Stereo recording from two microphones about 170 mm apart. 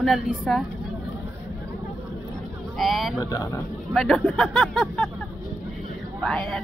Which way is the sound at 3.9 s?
Centre (ahead or behind).